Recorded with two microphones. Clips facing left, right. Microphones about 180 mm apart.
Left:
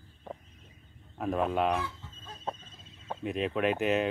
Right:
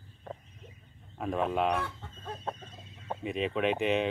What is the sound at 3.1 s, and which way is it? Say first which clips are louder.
Speech: even; centre (ahead or behind).